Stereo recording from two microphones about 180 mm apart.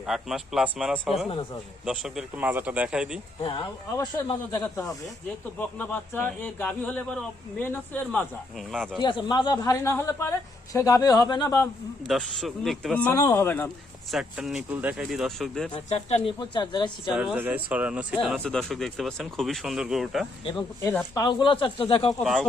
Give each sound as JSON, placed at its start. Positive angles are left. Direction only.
{"t": 0.1, "sound": "speech", "side_deg": 0}
{"t": 3.9, "sound": "speech", "side_deg": 20}
{"t": 9.0, "sound": "a woman's voice", "side_deg": 25}
{"t": 12.0, "sound": "speech", "side_deg": 0}
{"t": 14.1, "sound": "speech", "side_deg": -5}
{"t": 15.9, "sound": "speech", "side_deg": 40}
{"t": 16.4, "sound": "a woman's voice", "side_deg": 25}
{"t": 17.1, "sound": "speech", "side_deg": -5}
{"t": 18.4, "sound": "speech", "side_deg": 5}
{"t": 20.8, "sound": "speech", "side_deg": 15}
{"t": 21.2, "sound": "a woman's voice", "side_deg": 25}
{"t": 22.2, "sound": "speech", "side_deg": 0}